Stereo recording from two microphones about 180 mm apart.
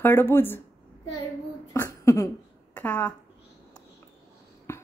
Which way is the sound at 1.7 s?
15° left (ahead or behind).